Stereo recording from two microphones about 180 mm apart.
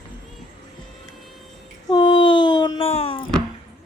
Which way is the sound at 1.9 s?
25° left (ahead or behind).